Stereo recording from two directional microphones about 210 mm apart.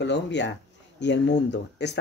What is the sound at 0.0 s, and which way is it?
Speech, 55° left (ahead or behind).